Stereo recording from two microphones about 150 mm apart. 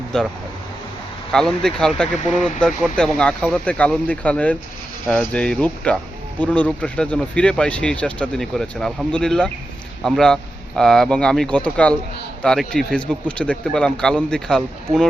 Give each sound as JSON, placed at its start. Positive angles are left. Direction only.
{"t": 0.1, "sound": "speech", "side_deg": 5}
{"t": 14.9, "sound": "speech", "side_deg": -40}